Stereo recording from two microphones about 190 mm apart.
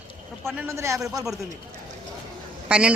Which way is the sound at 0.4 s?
15° right (ahead or behind).